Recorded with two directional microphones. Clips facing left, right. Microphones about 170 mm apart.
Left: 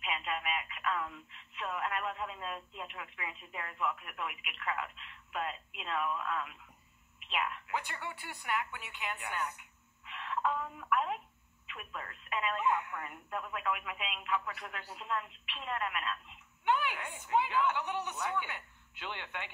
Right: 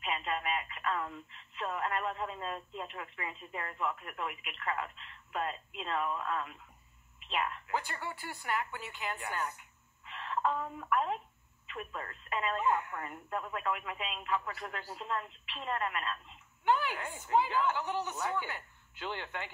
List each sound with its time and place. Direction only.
0.0 s speech: 35° right (ahead or behind)